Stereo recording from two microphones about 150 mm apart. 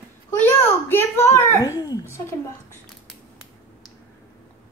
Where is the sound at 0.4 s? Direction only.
15° left (ahead or behind).